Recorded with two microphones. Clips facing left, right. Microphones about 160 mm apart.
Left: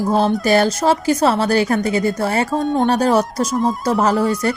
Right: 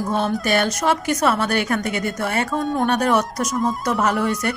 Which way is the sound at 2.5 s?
25° left (ahead or behind).